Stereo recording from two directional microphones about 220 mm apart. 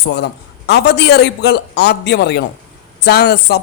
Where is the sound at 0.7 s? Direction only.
50° left (ahead or behind).